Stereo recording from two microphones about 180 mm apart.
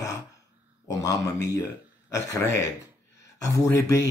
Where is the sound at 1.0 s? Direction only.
20° left (ahead or behind).